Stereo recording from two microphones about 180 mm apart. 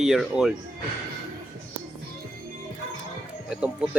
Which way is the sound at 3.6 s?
5° right (ahead or behind).